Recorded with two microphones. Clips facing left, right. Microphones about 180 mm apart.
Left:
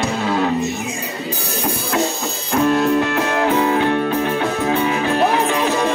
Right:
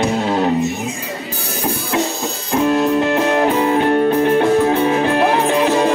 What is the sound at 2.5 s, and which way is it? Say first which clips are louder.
Music: right 1 dB; 25° right (ahead or behind).